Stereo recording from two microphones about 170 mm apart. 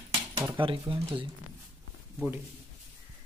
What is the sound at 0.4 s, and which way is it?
Speech, 30° right (ahead or behind).